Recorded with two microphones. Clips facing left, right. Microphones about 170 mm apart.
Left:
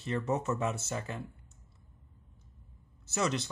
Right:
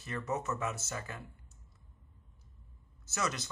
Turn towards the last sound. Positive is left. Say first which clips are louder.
# left 5 dB
turn(degrees=30)  # may be behind; listen again after turning